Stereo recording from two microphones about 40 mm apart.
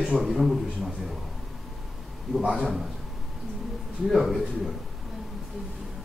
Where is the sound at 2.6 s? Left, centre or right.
Centre.